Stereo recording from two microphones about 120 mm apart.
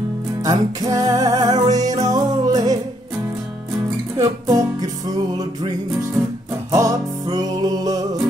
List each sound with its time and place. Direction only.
0.4 s music: 30° right (ahead or behind)
4.2 s music: 30° right (ahead or behind)
6.7 s music: 30° right (ahead or behind)